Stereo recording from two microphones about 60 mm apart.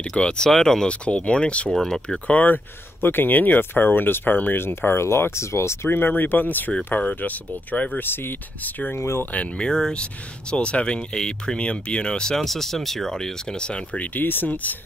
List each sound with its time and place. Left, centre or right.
0.1 s speech: centre; by 5.8 s left
5.9 s speech: left
8.9 s speech: left
9.2 s speech: left
9.7 s speech: centre
14.1 s speech: left